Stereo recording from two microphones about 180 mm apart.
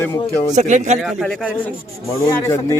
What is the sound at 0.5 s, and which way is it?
Speech, 40° right (ahead or behind).